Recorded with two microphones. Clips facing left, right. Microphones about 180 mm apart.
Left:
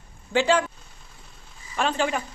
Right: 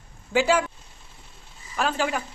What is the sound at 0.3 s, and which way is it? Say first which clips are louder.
Speech: even; 10° right (ahead or behind).